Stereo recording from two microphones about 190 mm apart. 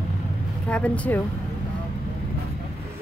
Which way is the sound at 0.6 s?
5° left (ahead or behind).